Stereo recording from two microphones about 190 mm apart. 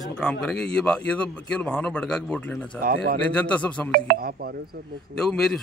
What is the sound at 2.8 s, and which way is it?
Speech, 50° right (ahead or behind).